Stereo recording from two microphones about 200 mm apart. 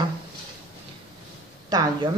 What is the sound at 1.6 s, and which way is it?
Speech, 20° right (ahead or behind).